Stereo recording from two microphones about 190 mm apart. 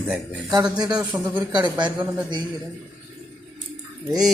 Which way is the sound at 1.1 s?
10° right (ahead or behind).